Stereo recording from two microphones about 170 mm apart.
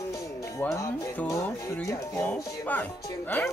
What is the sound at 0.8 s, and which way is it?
Speech, 20° left (ahead or behind).